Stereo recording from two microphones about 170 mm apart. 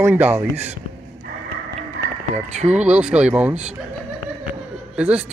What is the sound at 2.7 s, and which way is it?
Speech, 5° right (ahead or behind).